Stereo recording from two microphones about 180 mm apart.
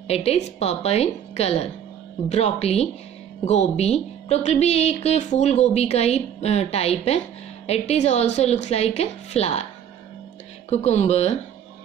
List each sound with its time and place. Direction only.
0.1 s a woman's voice: 35° left (ahead or behind)
10.7 s a woman's voice: 40° left (ahead or behind)